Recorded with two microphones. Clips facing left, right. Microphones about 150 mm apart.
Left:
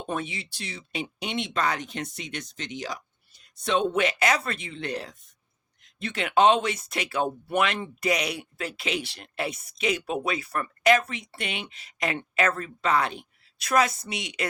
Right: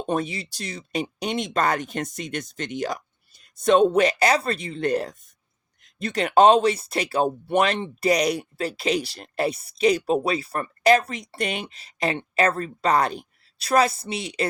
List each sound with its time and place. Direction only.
0.1 s speech: 40° right (ahead or behind)